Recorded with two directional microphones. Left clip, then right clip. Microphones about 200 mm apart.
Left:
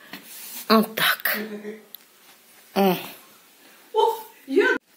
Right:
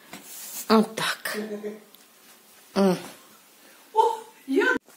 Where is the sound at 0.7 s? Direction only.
5° right (ahead or behind).